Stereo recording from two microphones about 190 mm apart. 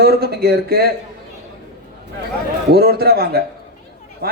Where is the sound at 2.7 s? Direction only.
55° right (ahead or behind).